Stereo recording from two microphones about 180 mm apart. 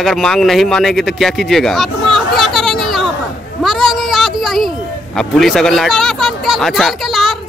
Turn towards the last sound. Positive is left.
turn(degrees=0)  # may be behind; listen again after turning